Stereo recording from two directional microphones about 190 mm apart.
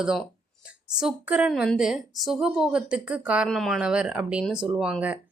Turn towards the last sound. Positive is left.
turn(degrees=-5)  # may be behind; listen again after turning